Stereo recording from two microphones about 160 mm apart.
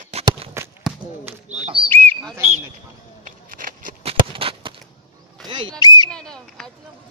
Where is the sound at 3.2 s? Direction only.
60° right (ahead or behind).